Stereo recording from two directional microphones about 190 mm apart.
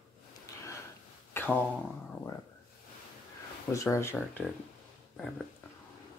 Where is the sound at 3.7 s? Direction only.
15° left (ahead or behind).